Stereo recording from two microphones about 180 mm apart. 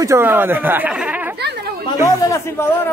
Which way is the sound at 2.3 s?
15° left (ahead or behind).